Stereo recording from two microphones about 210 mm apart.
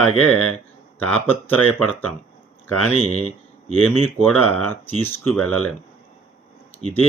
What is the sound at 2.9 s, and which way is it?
Speech, 30° left (ahead or behind).